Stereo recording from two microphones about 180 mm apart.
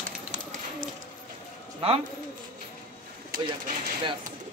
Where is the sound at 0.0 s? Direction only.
45° right (ahead or behind).